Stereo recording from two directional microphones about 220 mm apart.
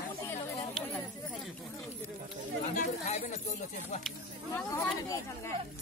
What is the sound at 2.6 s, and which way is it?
Chatter, 35° left (ahead or behind).